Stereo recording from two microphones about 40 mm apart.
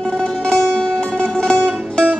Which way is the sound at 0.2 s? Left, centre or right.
Left.